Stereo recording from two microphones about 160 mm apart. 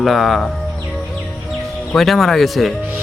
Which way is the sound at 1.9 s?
Centre (ahead or behind).